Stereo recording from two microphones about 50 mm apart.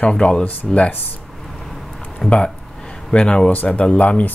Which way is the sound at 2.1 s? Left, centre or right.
Centre.